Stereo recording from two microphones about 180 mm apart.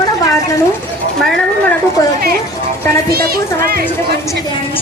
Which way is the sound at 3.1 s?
60° right (ahead or behind).